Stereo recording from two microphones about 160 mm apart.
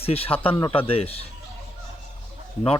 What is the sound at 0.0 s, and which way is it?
Speech, 35° left (ahead or behind).